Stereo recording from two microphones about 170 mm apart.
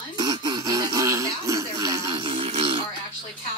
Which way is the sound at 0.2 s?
25° right (ahead or behind).